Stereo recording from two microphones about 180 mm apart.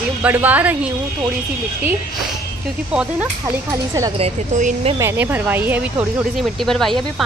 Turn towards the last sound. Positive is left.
turn(degrees=0)  # may be behind; listen again after turning